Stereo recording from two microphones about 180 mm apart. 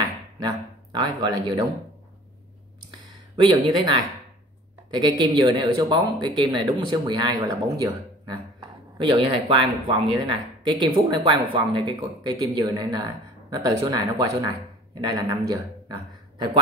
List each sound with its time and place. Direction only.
0.4 s speech: 25° right (ahead or behind)
3.3 s a man's voice: 30° right (ahead or behind)